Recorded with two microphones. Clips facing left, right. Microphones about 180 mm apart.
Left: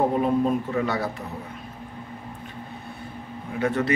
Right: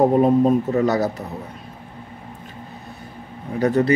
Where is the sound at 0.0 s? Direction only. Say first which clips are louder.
Right 6 dB; 40° right (ahead or behind).